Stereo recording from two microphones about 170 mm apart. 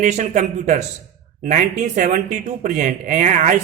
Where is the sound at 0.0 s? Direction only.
45° right (ahead or behind).